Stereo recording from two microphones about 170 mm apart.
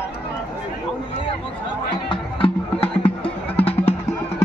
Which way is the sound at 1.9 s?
30° left (ahead or behind).